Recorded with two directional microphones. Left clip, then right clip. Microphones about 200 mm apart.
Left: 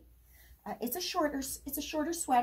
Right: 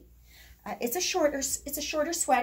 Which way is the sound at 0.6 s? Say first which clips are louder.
Right 6 dB; 10° right (ahead or behind).